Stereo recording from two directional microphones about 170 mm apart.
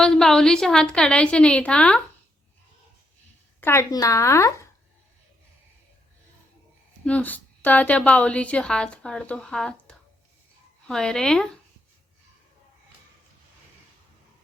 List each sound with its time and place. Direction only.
0.0 s a woman's voice: 5° left (ahead or behind)
3.6 s a woman's voice: 15° left (ahead or behind)
7.0 s a woman's voice: 10° left (ahead or behind)